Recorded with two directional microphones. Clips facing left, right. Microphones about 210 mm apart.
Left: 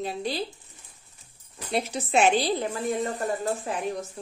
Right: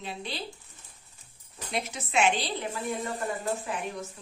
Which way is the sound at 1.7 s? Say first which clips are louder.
Left 7 dB; 35° left (ahead or behind).